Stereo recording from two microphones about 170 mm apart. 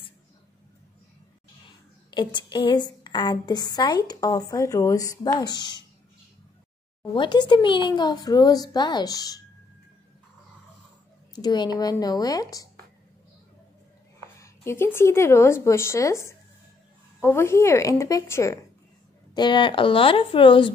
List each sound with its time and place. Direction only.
2.0 s a woman's voice: 25° left (ahead or behind)
7.2 s a woman's voice: 30° left (ahead or behind)
11.3 s a woman's voice: 25° left (ahead or behind)
14.4 s a woman's voice: 15° left (ahead or behind)